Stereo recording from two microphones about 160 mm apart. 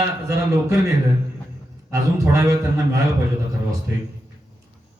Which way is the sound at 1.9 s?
20° right (ahead or behind).